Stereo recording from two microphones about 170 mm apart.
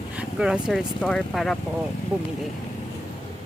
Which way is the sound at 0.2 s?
5° right (ahead or behind).